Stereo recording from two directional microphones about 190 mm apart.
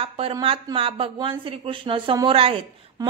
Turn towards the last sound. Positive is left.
turn(degrees=-30)  # may be behind; listen again after turning